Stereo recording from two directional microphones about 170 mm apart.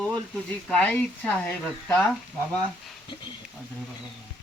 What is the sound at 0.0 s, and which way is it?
Speech, 5° left (ahead or behind).